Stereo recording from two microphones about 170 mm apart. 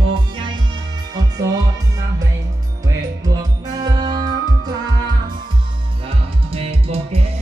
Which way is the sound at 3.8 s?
25° right (ahead or behind).